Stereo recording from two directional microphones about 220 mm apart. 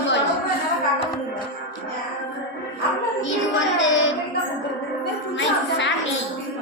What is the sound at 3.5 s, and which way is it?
Speech, 60° left (ahead or behind).